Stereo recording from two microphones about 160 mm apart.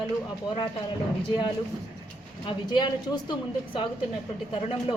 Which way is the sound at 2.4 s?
30° left (ahead or behind).